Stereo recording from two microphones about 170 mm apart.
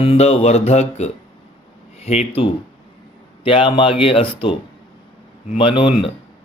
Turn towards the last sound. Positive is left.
turn(degrees=30)  # may be behind; listen again after turning